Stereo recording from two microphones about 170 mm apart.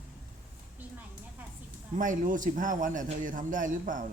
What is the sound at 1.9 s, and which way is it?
A man's voice, 50° right (ahead or behind).